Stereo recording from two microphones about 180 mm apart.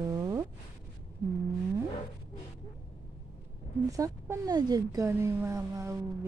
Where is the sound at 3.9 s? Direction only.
20° right (ahead or behind).